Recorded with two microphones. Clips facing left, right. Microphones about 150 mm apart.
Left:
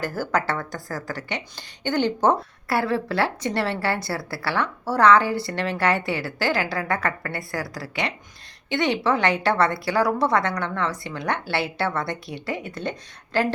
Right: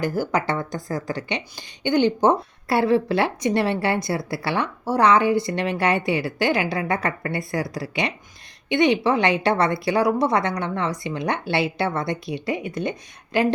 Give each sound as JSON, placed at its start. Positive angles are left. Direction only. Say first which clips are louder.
{"t": 0.0, "sound": "a woman's voice", "louder": "right 2 dB", "side_deg": -15}